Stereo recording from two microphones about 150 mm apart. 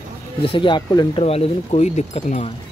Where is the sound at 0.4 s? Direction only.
35° left (ahead or behind).